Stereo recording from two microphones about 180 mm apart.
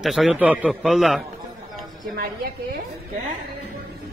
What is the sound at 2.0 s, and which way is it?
Speech, 55° right (ahead or behind).